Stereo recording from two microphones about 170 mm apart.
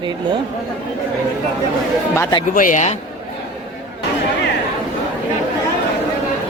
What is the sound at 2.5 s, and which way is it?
Speech, 50° left (ahead or behind).